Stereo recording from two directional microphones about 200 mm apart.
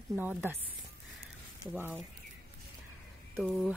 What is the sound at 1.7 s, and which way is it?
Speech, 5° right (ahead or behind).